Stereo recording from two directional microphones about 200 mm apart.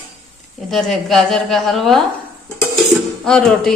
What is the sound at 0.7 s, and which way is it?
Mantra, centre (ahead or behind).